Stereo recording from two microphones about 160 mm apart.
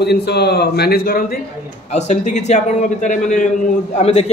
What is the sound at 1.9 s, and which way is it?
A man's voice, 45° left (ahead or behind).